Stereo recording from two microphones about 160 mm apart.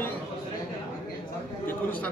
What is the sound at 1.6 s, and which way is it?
Speech, 10° left (ahead or behind).